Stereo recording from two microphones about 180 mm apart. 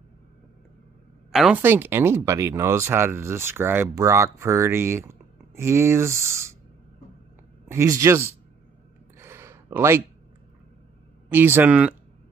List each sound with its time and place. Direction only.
1.3 s speech: 5° right (ahead or behind)
7.6 s speech: 15° right (ahead or behind)
9.2 s a sound: 15° right (ahead or behind)
11.2 s speech: 10° right (ahead or behind)